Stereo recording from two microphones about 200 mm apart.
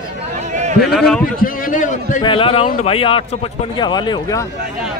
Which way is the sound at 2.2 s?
25° left (ahead or behind).